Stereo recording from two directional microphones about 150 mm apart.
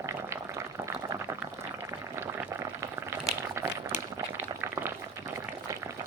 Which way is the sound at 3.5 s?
20° right (ahead or behind).